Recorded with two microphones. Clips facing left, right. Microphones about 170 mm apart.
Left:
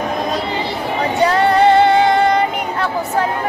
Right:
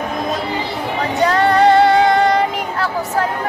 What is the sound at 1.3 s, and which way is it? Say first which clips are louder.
Music: right 1 dB; centre (ahead or behind).